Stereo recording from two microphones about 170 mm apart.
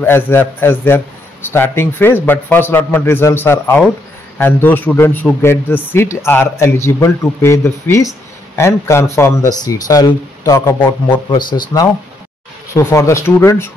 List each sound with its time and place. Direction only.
0.0 s speech: 10° left (ahead or behind)